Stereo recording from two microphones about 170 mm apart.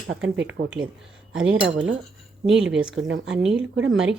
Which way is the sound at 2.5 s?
90° right.